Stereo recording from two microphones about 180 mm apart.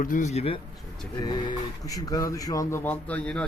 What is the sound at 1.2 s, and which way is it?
Speech, 20° left (ahead or behind).